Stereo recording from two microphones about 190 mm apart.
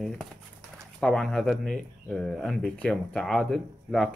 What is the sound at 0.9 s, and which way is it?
Speech, 5° left (ahead or behind).